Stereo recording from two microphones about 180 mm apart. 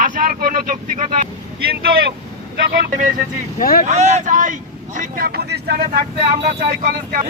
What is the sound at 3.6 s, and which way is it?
Speech, 55° left (ahead or behind).